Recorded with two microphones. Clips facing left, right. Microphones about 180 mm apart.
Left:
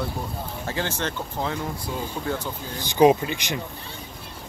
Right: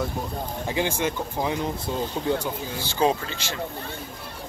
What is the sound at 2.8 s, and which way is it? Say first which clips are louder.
Speech: left 7 dB; 15° left (ahead or behind).